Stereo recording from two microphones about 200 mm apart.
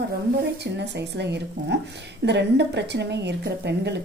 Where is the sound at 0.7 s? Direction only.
60° right (ahead or behind).